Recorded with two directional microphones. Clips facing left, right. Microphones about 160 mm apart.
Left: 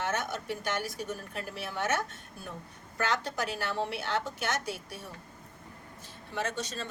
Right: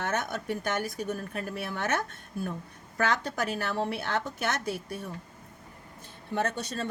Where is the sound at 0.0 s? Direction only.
55° right (ahead or behind).